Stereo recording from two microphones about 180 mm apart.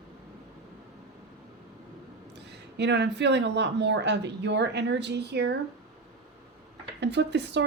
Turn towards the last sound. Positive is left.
turn(degrees=-75)  # may be behind; listen again after turning